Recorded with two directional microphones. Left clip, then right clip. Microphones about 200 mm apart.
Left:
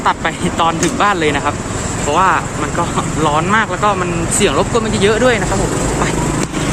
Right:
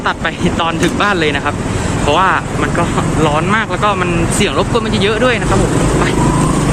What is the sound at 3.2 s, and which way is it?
Speech, 20° left (ahead or behind).